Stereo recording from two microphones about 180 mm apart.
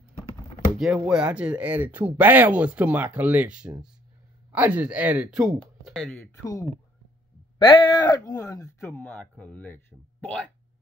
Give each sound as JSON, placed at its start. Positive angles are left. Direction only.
{"t": 0.7, "sound": "speech", "side_deg": -5}
{"t": 7.5, "sound": "speech", "side_deg": 25}
{"t": 9.0, "sound": "speech", "side_deg": 5}